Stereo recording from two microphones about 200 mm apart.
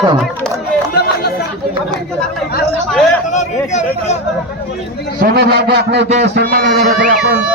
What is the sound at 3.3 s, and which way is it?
Speech, 35° left (ahead or behind).